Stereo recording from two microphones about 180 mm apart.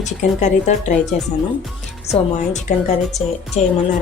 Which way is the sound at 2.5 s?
40° left (ahead or behind).